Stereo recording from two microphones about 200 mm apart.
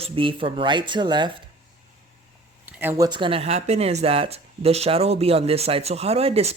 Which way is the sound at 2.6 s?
10° right (ahead or behind).